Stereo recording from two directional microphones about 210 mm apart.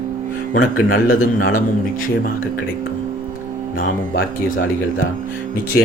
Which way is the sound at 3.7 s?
45° left (ahead or behind).